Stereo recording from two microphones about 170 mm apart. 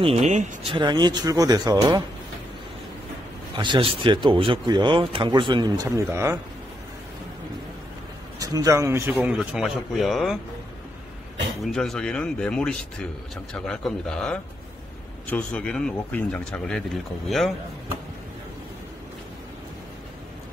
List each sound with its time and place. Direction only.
0.0 s speech: 40° right (ahead or behind)
0.7 s speech: 25° right (ahead or behind)
3.5 s speech: 25° right (ahead or behind)
8.4 s speech: 20° right (ahead or behind); by 10.4 s centre (ahead or behind)
11.6 s speech: 5° left (ahead or behind)